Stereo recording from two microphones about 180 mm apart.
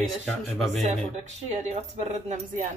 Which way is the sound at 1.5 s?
40° right (ahead or behind).